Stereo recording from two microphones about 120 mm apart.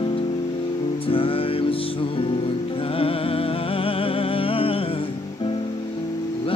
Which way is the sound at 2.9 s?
50° left (ahead or behind).